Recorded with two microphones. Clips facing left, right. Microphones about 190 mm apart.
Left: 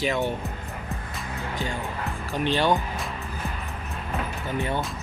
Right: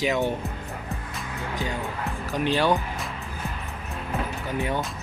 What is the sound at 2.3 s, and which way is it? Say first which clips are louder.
Speech: right 1 dB; 5° right (ahead or behind).